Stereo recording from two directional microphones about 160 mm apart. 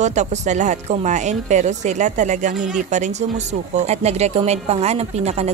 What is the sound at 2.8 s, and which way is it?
A woman's voice, 50° right (ahead or behind).